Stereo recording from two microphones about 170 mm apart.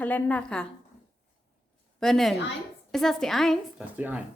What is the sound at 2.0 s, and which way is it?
A woman's voice, centre (ahead or behind).